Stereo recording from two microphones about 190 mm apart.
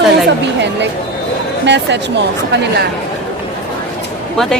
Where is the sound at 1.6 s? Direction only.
65° right (ahead or behind).